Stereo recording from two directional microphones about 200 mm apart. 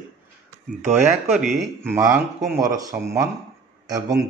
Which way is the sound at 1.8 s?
15° right (ahead or behind).